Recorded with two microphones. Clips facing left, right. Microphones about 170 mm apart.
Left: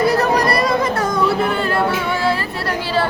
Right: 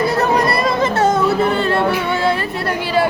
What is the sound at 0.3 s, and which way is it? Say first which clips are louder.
Chatter: even; 25° right (ahead or behind).